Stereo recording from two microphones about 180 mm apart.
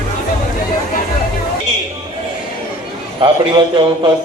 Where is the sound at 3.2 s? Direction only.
25° right (ahead or behind).